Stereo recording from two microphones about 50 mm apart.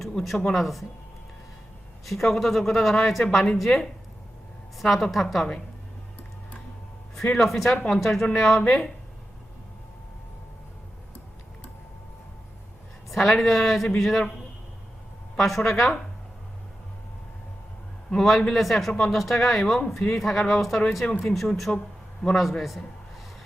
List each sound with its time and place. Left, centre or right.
0.0 s speech: centre
2.0 s speech: centre
7.3 s speech: centre
8.6 s speech: centre
13.1 s speech: centre
15.4 s speech: centre
18.1 s speech: centre